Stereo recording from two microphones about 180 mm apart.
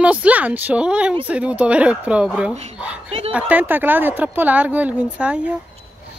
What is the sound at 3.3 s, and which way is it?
Speech, 10° right (ahead or behind).